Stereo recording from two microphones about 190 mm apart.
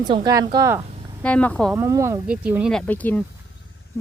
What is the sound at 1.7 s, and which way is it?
Speech, 15° right (ahead or behind).